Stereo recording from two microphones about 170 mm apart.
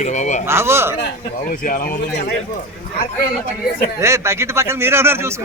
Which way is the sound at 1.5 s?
55° left (ahead or behind).